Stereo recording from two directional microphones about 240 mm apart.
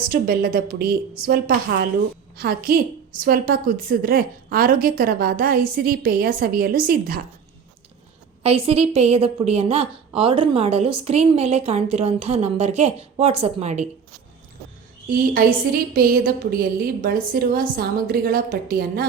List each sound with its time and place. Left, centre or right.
0.1 s a woman's voice: right
8.4 s a woman's voice: right
15.0 s a woman's voice: right